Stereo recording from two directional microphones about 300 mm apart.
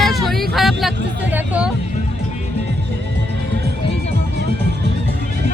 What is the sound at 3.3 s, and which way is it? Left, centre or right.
Music, right.